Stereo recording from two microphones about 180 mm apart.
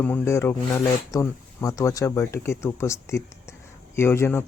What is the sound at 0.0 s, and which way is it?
Speech, 10° left (ahead or behind).